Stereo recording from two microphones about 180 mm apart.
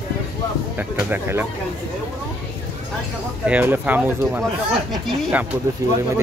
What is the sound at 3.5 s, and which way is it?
Speech, 10° right (ahead or behind).